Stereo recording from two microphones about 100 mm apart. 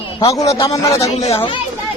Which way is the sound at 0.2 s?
35° left (ahead or behind).